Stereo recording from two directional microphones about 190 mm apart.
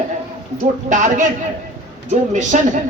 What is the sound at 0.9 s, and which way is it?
Speech, 40° right (ahead or behind).